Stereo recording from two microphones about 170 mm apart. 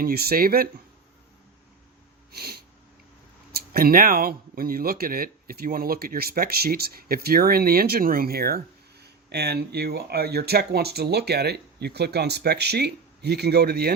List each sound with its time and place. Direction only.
0.0 s speech: 65° right (ahead or behind)
2.3 s sneeze: 65° right (ahead or behind)
3.5 s speech: 65° right (ahead or behind)